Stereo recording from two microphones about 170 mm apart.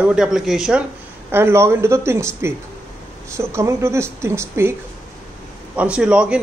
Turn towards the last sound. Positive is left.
turn(degrees=-5)  # may be behind; listen again after turning